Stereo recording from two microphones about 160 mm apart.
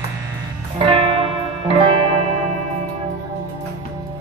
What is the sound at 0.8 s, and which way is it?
Music, 35° right (ahead or behind).